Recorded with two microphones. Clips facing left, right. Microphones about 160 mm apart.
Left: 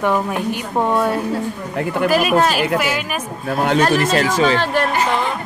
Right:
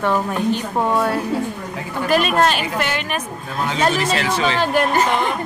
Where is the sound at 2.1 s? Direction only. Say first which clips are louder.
Right 1 dB; 5° left (ahead or behind).